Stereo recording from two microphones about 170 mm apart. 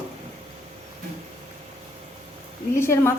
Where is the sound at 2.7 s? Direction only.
15° left (ahead or behind).